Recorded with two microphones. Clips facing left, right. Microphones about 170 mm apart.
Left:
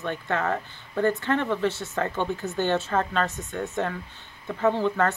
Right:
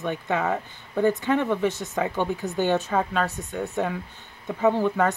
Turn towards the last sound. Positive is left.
turn(degrees=-15)  # may be behind; listen again after turning